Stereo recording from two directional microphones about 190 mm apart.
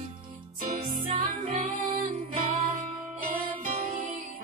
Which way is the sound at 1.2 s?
45° right (ahead or behind).